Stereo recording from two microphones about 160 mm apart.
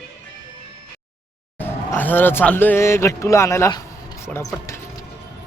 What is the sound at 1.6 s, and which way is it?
Speech, 10° left (ahead or behind).